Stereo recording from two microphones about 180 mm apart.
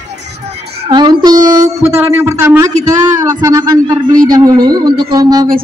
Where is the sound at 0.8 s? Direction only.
25° right (ahead or behind).